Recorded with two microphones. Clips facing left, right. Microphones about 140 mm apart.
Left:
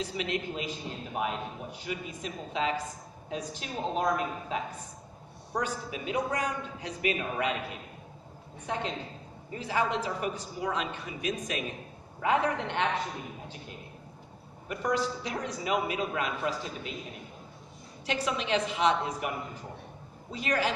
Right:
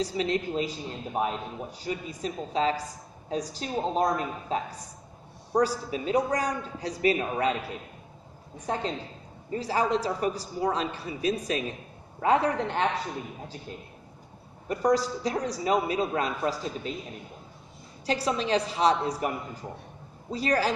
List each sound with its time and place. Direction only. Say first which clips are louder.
0.0 s a man's voice: right 5 dB; 35° right (ahead or behind)
8.5 s a man's voice: right 3 dB; 35° right (ahead or behind)
14.7 s a man's voice: right 5 dB; 35° right (ahead or behind)
18.0 s a man's voice: right 4 dB; 35° right (ahead or behind)